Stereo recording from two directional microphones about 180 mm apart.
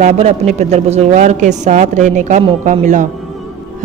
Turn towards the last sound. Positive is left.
turn(degrees=-45)  # may be behind; listen again after turning